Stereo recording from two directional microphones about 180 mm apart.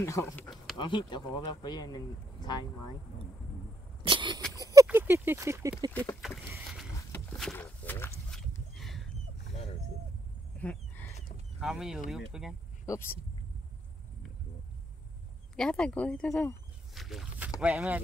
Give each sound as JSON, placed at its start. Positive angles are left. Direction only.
{"t": 0.0, "sound": "speech", "side_deg": 15}
{"t": 0.7, "sound": "speech", "side_deg": 25}
{"t": 4.0, "sound": "cough", "side_deg": -25}
{"t": 4.6, "sound": "a sound", "side_deg": -20}
{"t": 4.8, "sound": "speech", "side_deg": -10}
{"t": 5.9, "sound": "speech", "side_deg": 10}
{"t": 7.1, "sound": "a sound", "side_deg": 5}
{"t": 10.6, "sound": "a sound", "side_deg": 10}
{"t": 11.6, "sound": "speech", "side_deg": -5}
{"t": 12.8, "sound": "speech", "side_deg": 15}
{"t": 15.5, "sound": "speech", "side_deg": 5}